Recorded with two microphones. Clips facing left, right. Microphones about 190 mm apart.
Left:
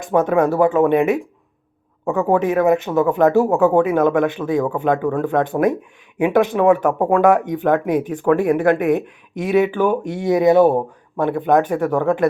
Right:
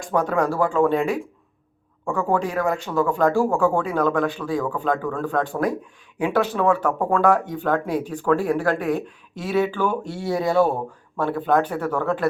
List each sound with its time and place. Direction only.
0.0 s speech: 20° left (ahead or behind)